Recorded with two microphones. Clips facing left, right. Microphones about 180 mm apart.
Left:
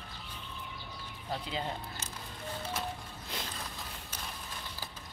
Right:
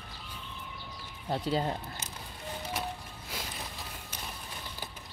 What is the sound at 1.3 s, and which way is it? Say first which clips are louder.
Speech: right 7 dB; 40° right (ahead or behind).